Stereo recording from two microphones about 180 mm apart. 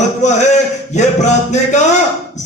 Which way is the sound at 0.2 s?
40° left (ahead or behind).